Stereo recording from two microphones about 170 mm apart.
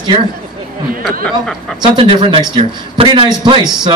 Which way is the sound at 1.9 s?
35° right (ahead or behind).